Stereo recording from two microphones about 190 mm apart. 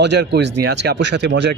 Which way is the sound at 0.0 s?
60° right (ahead or behind).